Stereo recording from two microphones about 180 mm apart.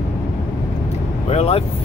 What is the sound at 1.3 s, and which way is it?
Vehicle, 35° left (ahead or behind).